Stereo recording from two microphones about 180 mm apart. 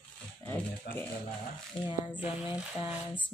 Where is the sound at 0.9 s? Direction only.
55° left (ahead or behind).